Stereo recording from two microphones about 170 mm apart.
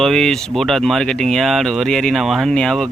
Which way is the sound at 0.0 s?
5° left (ahead or behind).